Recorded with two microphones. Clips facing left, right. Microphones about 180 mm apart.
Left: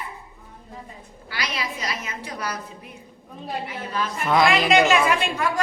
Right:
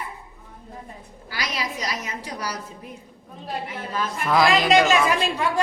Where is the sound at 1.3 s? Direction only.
40° right (ahead or behind).